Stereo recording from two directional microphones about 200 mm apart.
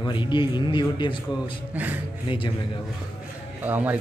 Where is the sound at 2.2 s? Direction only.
25° left (ahead or behind).